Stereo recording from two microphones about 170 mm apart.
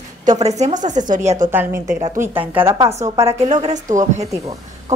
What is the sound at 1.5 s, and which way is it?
Speech, 15° right (ahead or behind).